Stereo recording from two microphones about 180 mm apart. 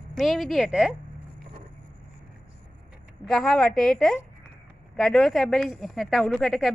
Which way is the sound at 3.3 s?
5° left (ahead or behind).